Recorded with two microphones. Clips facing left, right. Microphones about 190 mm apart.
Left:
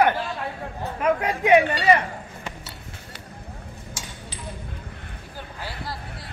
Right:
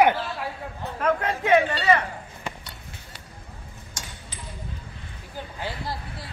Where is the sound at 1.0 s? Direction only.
15° left (ahead or behind).